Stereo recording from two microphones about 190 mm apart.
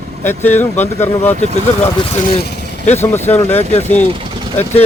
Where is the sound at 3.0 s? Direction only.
10° left (ahead or behind).